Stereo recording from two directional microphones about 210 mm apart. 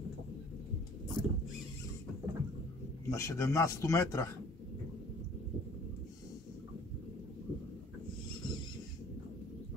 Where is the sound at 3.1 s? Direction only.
15° left (ahead or behind).